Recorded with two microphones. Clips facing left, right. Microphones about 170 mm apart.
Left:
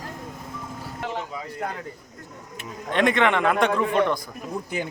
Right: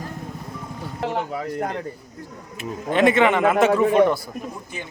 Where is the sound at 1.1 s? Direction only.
65° right (ahead or behind).